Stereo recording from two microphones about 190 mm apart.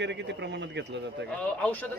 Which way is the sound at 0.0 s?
65° right (ahead or behind).